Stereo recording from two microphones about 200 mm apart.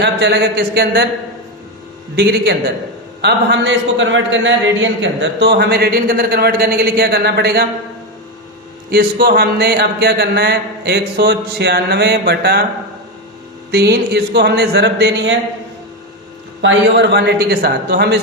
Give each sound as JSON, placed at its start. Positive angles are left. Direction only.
{"t": 0.0, "sound": "speech", "side_deg": -55}
{"t": 2.1, "sound": "a man's voice", "side_deg": -55}
{"t": 8.9, "sound": "a man's voice", "side_deg": -50}
{"t": 13.7, "sound": "speech", "side_deg": -55}
{"t": 16.6, "sound": "speech", "side_deg": -60}